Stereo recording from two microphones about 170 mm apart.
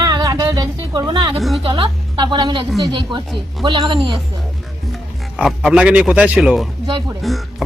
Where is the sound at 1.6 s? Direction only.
30° right (ahead or behind).